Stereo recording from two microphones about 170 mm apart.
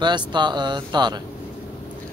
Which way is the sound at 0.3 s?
25° right (ahead or behind).